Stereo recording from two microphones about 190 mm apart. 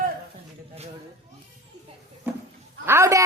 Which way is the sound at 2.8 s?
15° right (ahead or behind).